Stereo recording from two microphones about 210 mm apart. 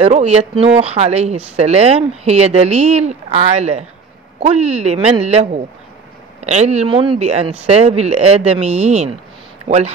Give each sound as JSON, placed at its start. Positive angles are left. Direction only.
{"t": 0.0, "sound": "speech", "side_deg": -30}